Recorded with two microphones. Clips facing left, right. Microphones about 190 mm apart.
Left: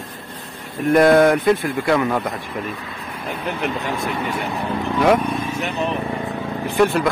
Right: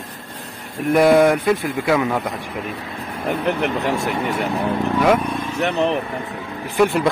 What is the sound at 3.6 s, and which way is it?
Speech, 70° right (ahead or behind).